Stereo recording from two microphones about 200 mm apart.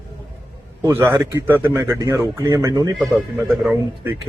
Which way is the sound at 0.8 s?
10° right (ahead or behind).